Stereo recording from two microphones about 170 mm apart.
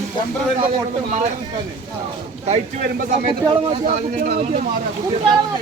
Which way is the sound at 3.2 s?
30° right (ahead or behind).